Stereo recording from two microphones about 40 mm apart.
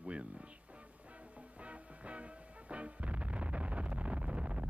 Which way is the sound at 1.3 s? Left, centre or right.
Right.